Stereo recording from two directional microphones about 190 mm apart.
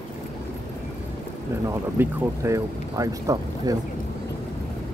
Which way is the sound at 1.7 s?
15° right (ahead or behind).